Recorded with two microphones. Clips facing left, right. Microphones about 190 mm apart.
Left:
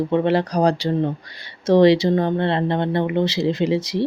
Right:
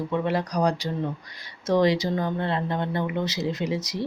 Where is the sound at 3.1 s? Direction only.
30° left (ahead or behind).